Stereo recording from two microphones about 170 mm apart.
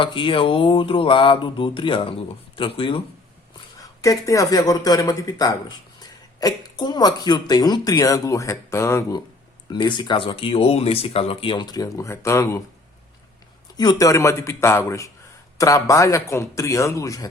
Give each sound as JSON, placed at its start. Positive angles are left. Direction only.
{"t": 0.0, "sound": "speech", "side_deg": 30}
{"t": 3.8, "sound": "speech", "side_deg": 20}
{"t": 13.7, "sound": "a man's voice", "side_deg": 20}